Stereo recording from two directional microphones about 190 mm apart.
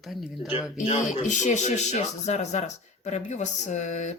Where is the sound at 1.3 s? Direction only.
40° left (ahead or behind).